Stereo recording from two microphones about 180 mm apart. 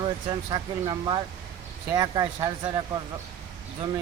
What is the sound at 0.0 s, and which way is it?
Speech, 25° right (ahead or behind).